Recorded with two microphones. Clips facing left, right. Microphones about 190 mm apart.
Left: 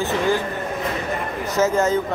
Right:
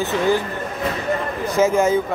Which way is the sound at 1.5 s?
10° right (ahead or behind).